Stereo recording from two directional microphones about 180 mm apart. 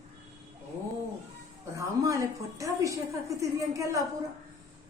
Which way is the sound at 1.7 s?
15° right (ahead or behind).